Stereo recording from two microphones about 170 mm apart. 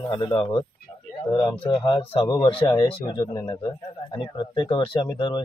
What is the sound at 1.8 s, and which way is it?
Speech, 30° left (ahead or behind).